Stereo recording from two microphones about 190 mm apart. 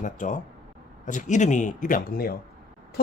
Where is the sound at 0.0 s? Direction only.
45° left (ahead or behind).